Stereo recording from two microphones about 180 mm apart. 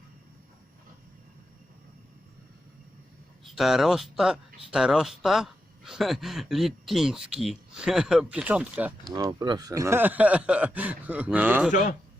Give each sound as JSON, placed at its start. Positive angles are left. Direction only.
{"t": 3.4, "sound": "speech", "side_deg": 0}
{"t": 9.1, "sound": "speech", "side_deg": -20}
{"t": 11.7, "sound": "speech", "side_deg": 45}